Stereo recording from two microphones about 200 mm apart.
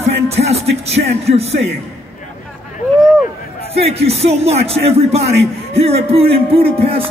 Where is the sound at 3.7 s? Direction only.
30° right (ahead or behind).